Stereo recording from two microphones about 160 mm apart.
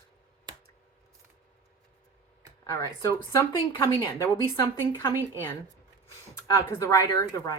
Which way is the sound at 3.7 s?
25° left (ahead or behind).